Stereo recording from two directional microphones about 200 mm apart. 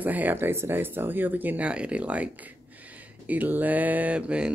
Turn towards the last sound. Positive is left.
turn(degrees=-5)  # may be behind; listen again after turning